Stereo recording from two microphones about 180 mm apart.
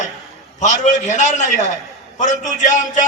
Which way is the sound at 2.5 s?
45° left (ahead or behind).